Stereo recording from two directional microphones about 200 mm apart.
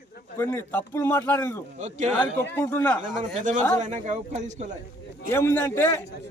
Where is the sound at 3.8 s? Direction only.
35° right (ahead or behind).